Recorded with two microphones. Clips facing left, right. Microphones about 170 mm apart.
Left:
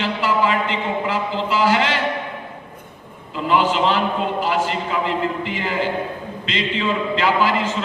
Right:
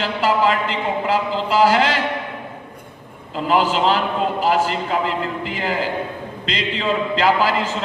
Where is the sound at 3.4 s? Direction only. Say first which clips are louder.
Right 1 dB; 40° right (ahead or behind).